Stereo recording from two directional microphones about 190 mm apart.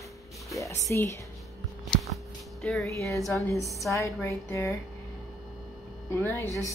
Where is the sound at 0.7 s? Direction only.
15° left (ahead or behind).